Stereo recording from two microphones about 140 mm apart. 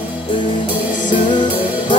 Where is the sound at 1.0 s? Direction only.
35° left (ahead or behind).